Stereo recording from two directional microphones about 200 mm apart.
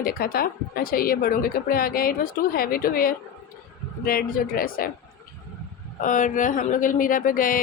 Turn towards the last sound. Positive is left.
turn(degrees=45)  # may be behind; listen again after turning